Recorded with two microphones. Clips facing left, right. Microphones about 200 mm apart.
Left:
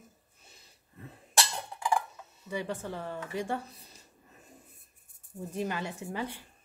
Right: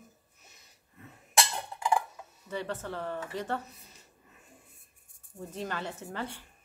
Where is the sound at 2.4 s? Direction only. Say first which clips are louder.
Left 1 dB; 10° left (ahead or behind).